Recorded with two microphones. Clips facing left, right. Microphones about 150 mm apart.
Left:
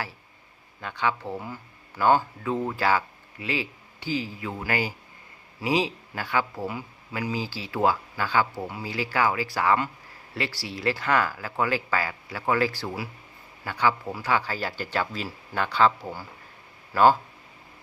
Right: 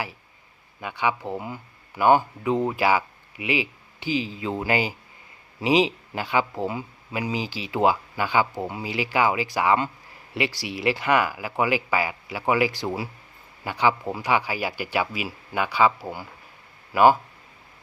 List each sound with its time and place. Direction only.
0.8 s speech: 10° right (ahead or behind)